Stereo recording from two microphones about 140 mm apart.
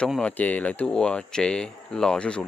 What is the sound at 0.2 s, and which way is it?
Speech, 10° left (ahead or behind).